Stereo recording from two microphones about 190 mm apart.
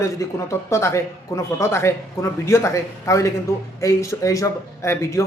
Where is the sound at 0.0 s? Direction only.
15° left (ahead or behind).